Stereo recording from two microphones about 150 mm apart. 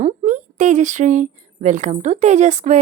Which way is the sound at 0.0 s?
55° right (ahead or behind).